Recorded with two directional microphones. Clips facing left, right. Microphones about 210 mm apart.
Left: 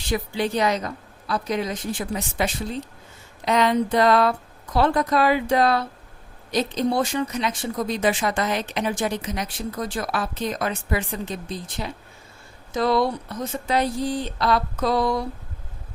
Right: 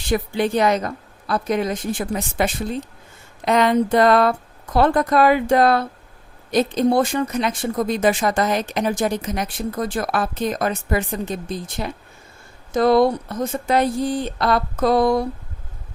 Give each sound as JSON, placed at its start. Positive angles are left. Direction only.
{"t": 0.1, "sound": "speech", "side_deg": -50}